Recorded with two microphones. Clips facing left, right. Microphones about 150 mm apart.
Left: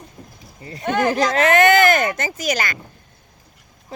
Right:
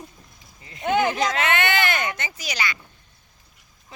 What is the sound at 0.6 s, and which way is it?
Speech, 40° left (ahead or behind).